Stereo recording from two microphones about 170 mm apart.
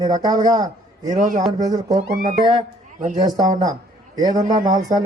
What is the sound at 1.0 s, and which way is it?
Speech, 50° right (ahead or behind).